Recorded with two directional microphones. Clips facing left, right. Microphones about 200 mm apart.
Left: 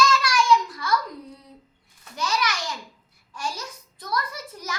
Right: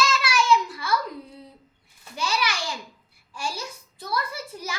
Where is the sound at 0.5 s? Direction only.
5° right (ahead or behind).